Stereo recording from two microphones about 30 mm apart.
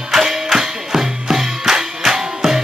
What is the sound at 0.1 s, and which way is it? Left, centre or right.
Music, centre.